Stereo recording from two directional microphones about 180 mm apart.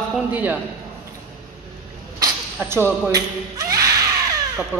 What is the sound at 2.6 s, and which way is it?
Speech, 10° right (ahead or behind).